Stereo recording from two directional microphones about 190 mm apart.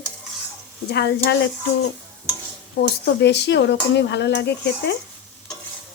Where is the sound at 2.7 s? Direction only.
60° left (ahead or behind).